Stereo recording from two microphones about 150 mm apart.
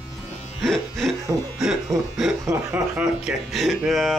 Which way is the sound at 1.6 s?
5° right (ahead or behind).